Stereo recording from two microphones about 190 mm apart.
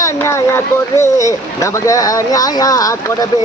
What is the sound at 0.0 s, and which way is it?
Speech, 15° left (ahead or behind).